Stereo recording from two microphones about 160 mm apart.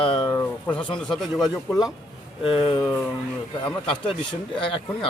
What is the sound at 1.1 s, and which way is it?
Speech, centre (ahead or behind).